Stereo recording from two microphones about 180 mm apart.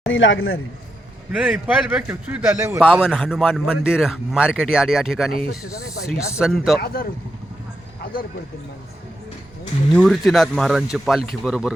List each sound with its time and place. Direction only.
0.1 s speech: 90° left
1.3 s a man's voice: 5° right (ahead or behind)
6.7 s speech: 60° left (ahead or behind)
9.9 s a man's voice: centre (ahead or behind)